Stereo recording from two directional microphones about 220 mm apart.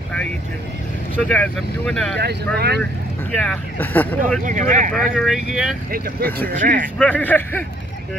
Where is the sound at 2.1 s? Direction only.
50° right (ahead or behind).